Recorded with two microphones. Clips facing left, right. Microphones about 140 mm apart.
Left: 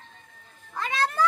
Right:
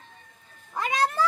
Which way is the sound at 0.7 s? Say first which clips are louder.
Right 3 dB; 20° right (ahead or behind).